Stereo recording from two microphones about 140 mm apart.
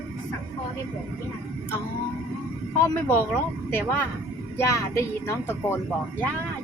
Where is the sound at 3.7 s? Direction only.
15° left (ahead or behind).